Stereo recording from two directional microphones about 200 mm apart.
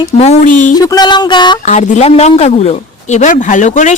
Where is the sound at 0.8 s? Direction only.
20° left (ahead or behind).